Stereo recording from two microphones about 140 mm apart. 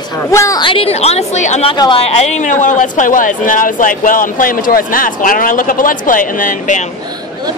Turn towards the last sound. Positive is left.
turn(degrees=65)  # may be behind; listen again after turning